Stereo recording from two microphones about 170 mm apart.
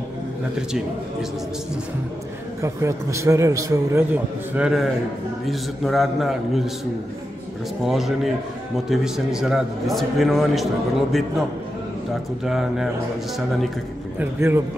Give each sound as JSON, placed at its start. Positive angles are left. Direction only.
{"t": 2.6, "sound": "a man's voice", "side_deg": -15}
{"t": 7.8, "sound": "a man's voice", "side_deg": 0}
{"t": 12.4, "sound": "a man's voice", "side_deg": 0}
{"t": 14.2, "sound": "a man's voice", "side_deg": -15}